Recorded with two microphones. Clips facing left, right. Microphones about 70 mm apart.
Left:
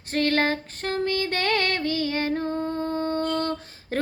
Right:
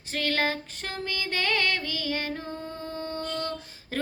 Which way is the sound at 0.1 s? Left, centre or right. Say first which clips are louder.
Left 5 dB; left.